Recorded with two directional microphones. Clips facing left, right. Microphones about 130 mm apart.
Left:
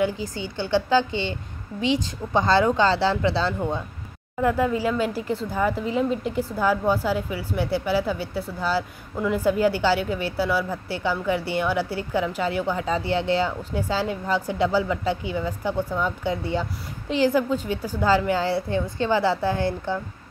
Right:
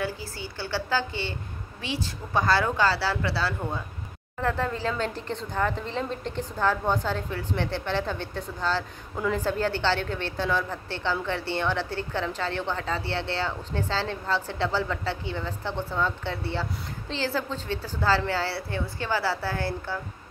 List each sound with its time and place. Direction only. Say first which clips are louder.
0.0 s speech: left 7 dB; 20° left (ahead or behind)
4.4 s a woman's voice: left 6 dB; 10° left (ahead or behind)